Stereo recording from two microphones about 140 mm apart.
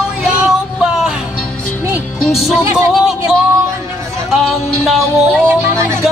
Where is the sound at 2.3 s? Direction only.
Centre (ahead or behind).